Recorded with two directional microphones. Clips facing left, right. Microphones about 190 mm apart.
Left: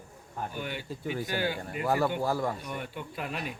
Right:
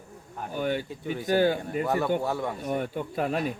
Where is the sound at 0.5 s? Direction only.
45° right (ahead or behind).